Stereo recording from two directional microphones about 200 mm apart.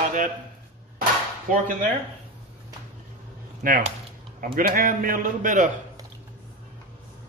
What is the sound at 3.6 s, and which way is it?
A man's voice, 45° right (ahead or behind).